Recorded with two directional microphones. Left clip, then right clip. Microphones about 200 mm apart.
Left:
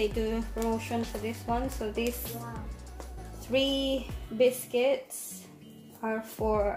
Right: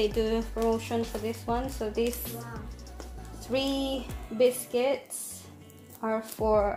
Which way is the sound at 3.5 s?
25° right (ahead or behind).